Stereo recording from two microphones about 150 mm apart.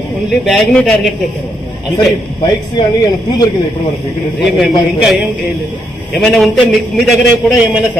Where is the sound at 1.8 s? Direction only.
30° left (ahead or behind).